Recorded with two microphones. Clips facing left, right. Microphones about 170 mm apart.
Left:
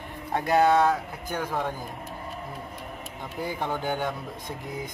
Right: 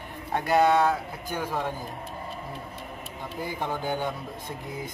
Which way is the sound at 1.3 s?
10° right (ahead or behind).